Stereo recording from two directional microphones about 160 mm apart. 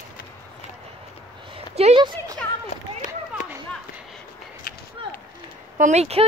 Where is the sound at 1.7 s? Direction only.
40° right (ahead or behind).